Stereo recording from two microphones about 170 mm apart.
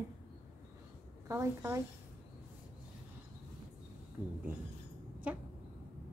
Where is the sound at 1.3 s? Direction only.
15° right (ahead or behind).